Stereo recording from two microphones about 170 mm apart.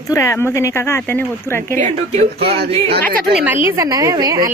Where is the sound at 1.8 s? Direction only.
40° right (ahead or behind).